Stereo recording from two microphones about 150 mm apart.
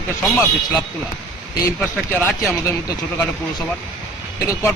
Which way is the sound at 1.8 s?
10° left (ahead or behind).